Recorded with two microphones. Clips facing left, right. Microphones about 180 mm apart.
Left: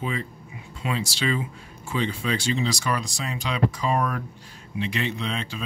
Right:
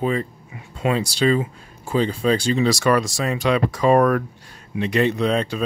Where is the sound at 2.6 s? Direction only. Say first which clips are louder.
Right 9 dB; 65° right (ahead or behind); by 5.6 s 45° right (ahead or behind).